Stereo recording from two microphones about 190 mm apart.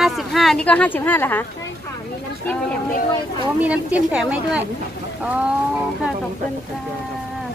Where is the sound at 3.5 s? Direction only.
5° right (ahead or behind).